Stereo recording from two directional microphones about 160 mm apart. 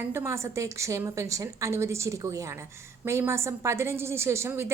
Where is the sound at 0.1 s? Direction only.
15° right (ahead or behind).